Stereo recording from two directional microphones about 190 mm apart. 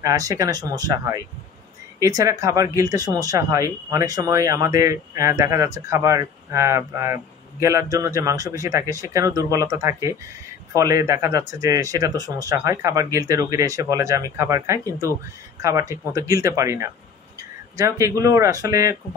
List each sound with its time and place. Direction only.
0.0 s speech: 15° right (ahead or behind)